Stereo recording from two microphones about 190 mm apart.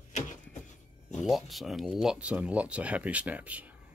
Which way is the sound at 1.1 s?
Centre (ahead or behind).